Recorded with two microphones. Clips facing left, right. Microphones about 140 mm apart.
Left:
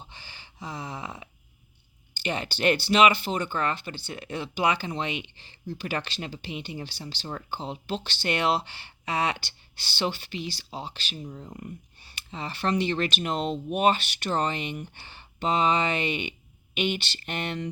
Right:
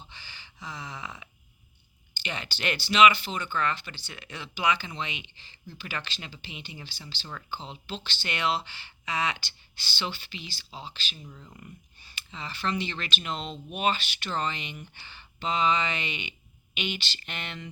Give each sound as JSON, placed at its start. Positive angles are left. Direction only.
{"t": 0.0, "sound": "a sound", "side_deg": 50}
{"t": 2.2, "sound": "speech", "side_deg": 50}
{"t": 6.7, "sound": "speech", "side_deg": 40}
{"t": 7.5, "sound": "speech", "side_deg": 55}
{"t": 10.6, "sound": "speech", "side_deg": 60}
{"t": 11.2, "sound": "speech", "side_deg": 35}
{"t": 12.3, "sound": "speech", "side_deg": 55}